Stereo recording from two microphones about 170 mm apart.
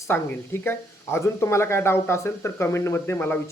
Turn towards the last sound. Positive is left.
turn(degrees=15)  # may be behind; listen again after turning